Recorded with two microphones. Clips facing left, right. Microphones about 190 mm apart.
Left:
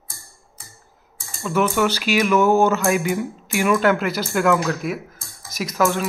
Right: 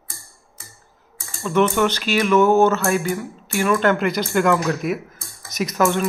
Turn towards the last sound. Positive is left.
turn(degrees=0)  # may be behind; listen again after turning